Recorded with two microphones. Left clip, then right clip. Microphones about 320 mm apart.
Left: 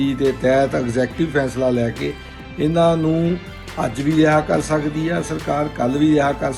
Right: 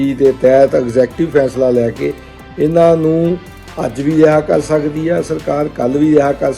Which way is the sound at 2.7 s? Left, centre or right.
Right.